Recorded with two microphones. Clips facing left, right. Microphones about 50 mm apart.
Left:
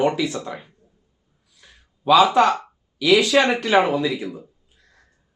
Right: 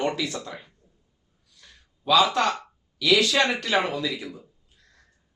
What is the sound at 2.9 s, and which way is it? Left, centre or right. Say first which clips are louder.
A man's voice: left 5 dB; centre.